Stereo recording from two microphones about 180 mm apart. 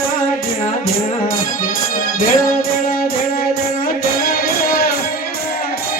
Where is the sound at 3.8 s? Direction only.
55° left (ahead or behind).